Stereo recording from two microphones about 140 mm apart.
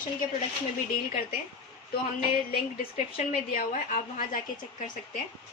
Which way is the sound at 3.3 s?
85° left.